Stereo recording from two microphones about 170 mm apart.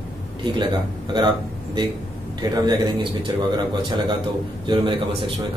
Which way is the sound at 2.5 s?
25° right (ahead or behind).